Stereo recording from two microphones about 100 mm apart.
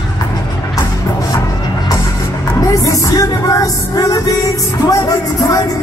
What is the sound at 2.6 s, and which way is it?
Music, 35° left (ahead or behind).